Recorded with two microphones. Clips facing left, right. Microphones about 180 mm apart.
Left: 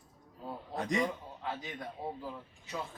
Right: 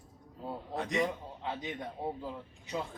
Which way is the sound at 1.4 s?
20° right (ahead or behind).